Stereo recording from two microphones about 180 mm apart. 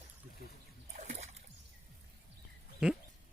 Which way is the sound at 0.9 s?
40° right (ahead or behind).